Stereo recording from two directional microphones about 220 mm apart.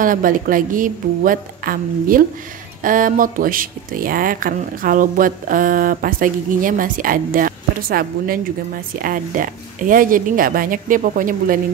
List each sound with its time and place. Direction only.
0.0 s speech: 40° right (ahead or behind)